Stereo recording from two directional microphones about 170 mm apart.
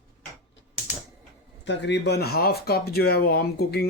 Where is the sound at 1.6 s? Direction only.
90° left.